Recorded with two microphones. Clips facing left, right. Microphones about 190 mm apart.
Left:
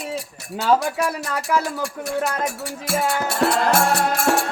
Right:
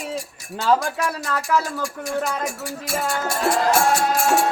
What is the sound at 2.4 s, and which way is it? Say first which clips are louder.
Music: left 1 dB; 65° left (ahead or behind).